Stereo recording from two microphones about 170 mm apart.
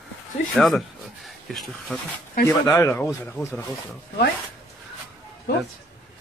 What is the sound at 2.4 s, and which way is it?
Speech, 15° left (ahead or behind).